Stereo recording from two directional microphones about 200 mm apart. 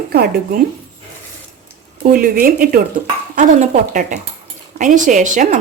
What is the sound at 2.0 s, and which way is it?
A woman's voice, 45° right (ahead or behind).